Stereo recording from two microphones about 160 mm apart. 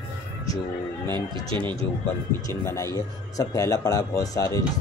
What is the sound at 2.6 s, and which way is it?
A man's voice, 15° left (ahead or behind).